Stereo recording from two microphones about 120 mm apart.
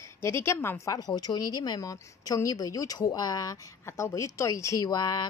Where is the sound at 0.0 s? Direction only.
20° left (ahead or behind).